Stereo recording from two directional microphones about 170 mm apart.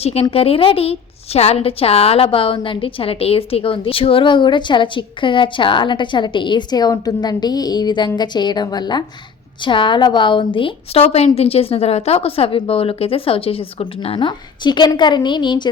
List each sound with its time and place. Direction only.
0.0 s a woman's voice: 35° left (ahead or behind)